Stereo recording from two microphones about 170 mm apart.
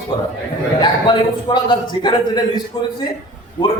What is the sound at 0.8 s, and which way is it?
A man's voice, 25° left (ahead or behind).